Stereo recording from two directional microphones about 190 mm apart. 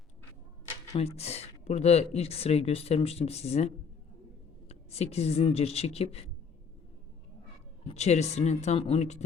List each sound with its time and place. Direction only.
0.9 s speech: 30° left (ahead or behind)
4.7 s speech: 35° left (ahead or behind)
7.9 s speech: 35° left (ahead or behind)